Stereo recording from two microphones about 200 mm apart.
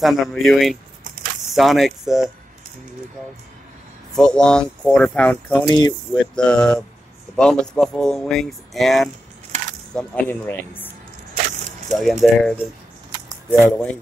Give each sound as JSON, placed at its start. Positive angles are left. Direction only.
{"t": 0.0, "sound": "speech", "side_deg": 0}
{"t": 4.1, "sound": "speech", "side_deg": 5}
{"t": 5.7, "sound": "speech", "side_deg": 20}
{"t": 6.3, "sound": "speech", "side_deg": 5}
{"t": 11.9, "sound": "speech", "side_deg": 0}
{"t": 13.6, "sound": "speech", "side_deg": 5}